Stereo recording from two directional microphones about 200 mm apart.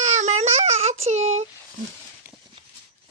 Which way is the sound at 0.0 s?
35° right (ahead or behind).